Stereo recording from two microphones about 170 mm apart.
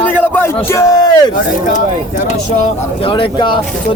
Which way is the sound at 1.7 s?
50° left (ahead or behind).